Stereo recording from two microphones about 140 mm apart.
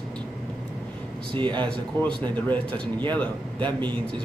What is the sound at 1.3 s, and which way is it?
Speech, 35° right (ahead or behind).